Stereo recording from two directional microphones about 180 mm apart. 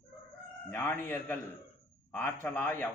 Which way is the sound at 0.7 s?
10° left (ahead or behind).